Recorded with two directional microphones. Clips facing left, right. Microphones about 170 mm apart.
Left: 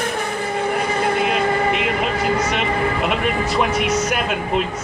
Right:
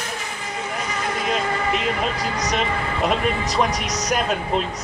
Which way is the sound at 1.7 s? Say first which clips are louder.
Left 3 dB; 40° right (ahead or behind).